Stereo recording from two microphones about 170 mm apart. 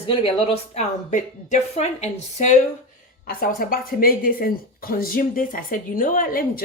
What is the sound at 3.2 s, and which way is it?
Speech, 60° left (ahead or behind).